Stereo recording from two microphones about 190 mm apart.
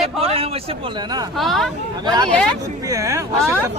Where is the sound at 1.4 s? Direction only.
Centre (ahead or behind).